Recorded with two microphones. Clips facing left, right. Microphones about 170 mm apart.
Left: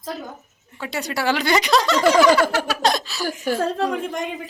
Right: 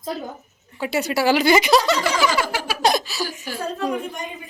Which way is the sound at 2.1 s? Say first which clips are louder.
Left 6 dB; 55° left (ahead or behind).